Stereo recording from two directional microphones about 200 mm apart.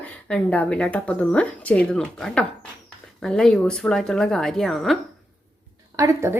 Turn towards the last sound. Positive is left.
turn(degrees=-15)  # may be behind; listen again after turning